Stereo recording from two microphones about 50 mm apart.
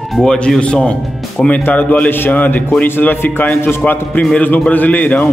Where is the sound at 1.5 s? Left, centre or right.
Left.